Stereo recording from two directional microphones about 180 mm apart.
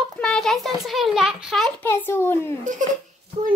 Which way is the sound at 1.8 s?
10° left (ahead or behind).